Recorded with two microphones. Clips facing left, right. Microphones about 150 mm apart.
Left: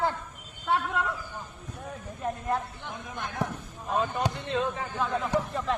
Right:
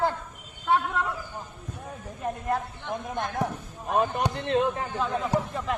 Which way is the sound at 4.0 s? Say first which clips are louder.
Right 3 dB; 65° right (ahead or behind).